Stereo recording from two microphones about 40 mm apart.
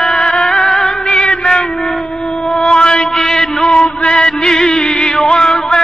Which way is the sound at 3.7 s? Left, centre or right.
Left.